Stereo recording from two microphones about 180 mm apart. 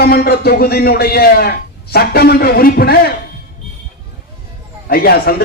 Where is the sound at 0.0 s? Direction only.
60° left (ahead or behind).